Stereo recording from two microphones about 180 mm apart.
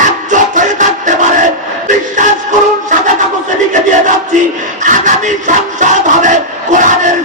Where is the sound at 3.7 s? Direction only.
45° right (ahead or behind).